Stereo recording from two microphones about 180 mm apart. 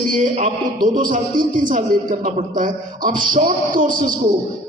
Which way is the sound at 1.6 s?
50° right (ahead or behind).